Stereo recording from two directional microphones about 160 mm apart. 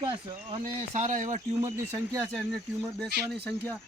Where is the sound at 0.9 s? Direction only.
50° right (ahead or behind).